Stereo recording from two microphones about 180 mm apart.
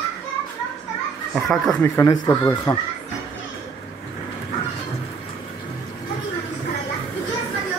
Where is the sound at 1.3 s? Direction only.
5° left (ahead or behind).